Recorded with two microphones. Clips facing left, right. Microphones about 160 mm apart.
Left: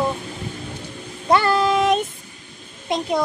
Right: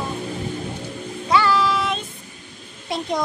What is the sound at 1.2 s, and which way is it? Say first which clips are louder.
Child singing: left 2 dB; 50° left (ahead or behind).